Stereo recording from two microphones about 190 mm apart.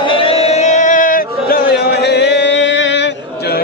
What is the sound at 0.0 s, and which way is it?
Music, 25° left (ahead or behind).